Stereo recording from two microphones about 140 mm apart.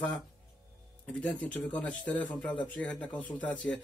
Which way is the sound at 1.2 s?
10° left (ahead or behind).